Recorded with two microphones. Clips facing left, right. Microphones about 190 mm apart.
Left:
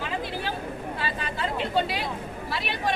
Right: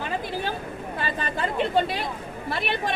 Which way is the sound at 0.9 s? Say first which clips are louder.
Right 6 dB; 50° right (ahead or behind).